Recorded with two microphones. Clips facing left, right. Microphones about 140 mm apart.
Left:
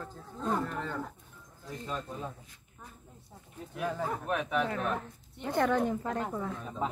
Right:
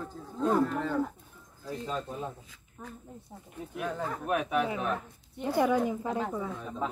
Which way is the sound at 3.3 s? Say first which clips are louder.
Right 5 dB; 15° right (ahead or behind).